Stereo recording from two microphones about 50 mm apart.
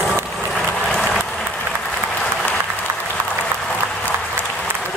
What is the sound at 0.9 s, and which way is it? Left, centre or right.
Applause, centre.